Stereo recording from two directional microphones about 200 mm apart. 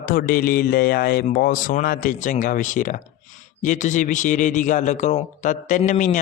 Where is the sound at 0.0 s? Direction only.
45° left (ahead or behind).